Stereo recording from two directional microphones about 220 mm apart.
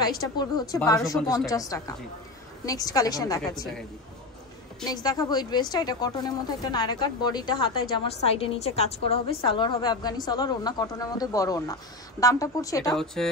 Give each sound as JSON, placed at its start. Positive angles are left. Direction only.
{"t": 0.4, "sound": "a woman's voice", "side_deg": 20}
{"t": 4.8, "sound": "a woman's voice", "side_deg": 15}
{"t": 12.9, "sound": "speech", "side_deg": 0}